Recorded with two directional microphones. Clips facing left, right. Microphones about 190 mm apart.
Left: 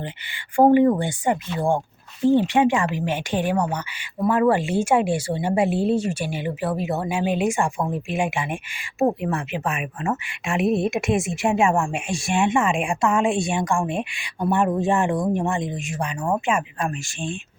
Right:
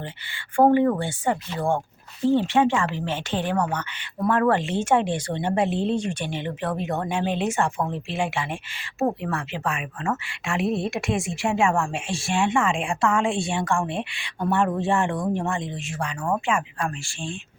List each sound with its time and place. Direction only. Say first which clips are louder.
0.5 s speech: left 3 dB; 15° left (ahead or behind)